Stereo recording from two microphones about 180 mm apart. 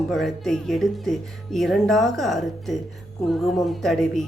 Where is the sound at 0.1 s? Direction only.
Centre (ahead or behind).